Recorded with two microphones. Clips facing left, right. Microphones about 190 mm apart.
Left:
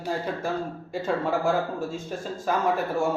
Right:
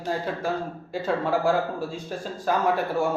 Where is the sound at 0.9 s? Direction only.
Centre (ahead or behind).